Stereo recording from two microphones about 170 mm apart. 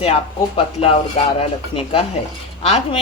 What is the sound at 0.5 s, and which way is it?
A woman's voice, 35° left (ahead or behind).